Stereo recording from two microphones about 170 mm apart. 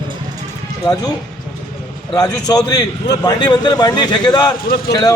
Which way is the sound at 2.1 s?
25° left (ahead or behind).